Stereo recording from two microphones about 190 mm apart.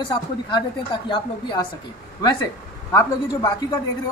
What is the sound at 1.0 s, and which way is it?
Speech, 25° left (ahead or behind).